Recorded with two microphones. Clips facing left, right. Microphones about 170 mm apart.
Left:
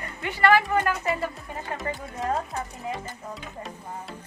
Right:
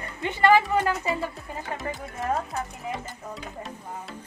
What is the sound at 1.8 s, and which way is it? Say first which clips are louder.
Speech: left 1 dB; centre (ahead or behind).